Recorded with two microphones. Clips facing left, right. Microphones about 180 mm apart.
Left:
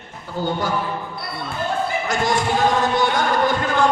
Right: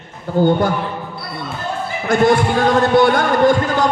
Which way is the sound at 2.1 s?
55° right (ahead or behind).